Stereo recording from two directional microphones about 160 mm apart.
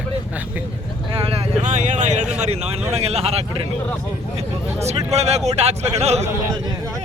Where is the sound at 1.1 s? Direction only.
35° right (ahead or behind).